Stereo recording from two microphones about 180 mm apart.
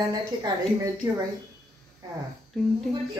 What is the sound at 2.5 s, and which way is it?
Speech, 5° left (ahead or behind).